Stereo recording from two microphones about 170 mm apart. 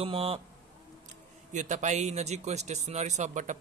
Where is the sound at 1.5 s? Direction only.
45° right (ahead or behind).